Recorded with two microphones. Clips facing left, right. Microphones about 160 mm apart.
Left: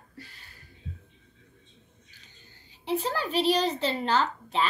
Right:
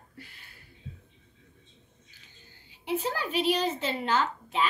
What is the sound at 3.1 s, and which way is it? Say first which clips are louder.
A child's voice: left 4 dB; 35° left (ahead or behind).